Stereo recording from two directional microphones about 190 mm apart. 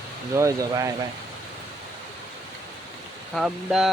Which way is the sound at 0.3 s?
15° right (ahead or behind).